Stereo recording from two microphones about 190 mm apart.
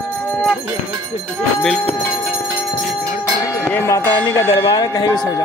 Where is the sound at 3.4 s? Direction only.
15° left (ahead or behind).